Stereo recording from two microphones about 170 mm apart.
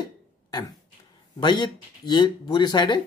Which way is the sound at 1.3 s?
25° left (ahead or behind).